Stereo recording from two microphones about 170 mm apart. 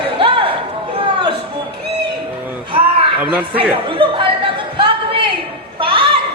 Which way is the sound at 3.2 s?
10° right (ahead or behind).